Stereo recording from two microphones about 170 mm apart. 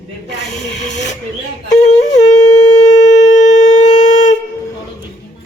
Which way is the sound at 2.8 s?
45° left (ahead or behind).